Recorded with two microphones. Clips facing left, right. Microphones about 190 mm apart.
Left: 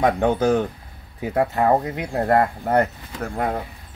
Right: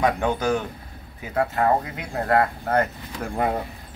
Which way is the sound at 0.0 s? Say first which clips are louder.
Left 4 dB; 25° left (ahead or behind).